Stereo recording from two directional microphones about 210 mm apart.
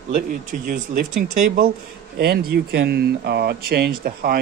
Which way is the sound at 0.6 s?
40° right (ahead or behind).